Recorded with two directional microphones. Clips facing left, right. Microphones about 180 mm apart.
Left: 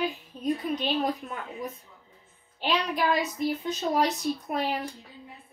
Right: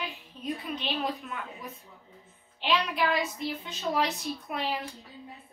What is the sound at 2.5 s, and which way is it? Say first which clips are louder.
A woman's voice: left 1 dB; 40° left (ahead or behind).